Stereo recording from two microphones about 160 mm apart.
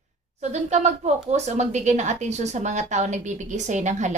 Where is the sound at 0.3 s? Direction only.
45° right (ahead or behind).